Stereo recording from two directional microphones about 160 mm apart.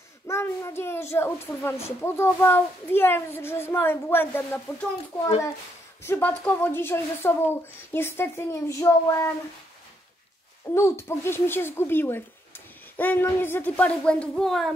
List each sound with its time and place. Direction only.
0.3 s a child's voice: 15° left (ahead or behind)
6.0 s a child's voice: 15° left (ahead or behind)
10.7 s a child's voice: 15° left (ahead or behind)